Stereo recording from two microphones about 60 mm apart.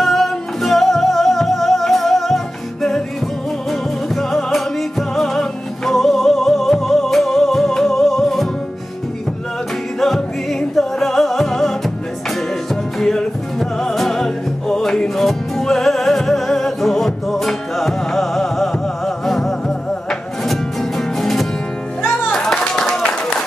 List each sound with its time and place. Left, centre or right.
0.0 s music: centre
4.1 s music: centre
9.9 s music: centre
13.0 s music: centre
21.0 s music: centre
22.9 s a sound: centre